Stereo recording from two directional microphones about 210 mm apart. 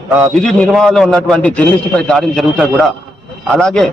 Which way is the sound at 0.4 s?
Centre (ahead or behind).